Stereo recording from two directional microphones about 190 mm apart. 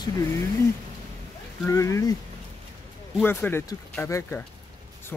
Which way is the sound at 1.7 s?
15° left (ahead or behind).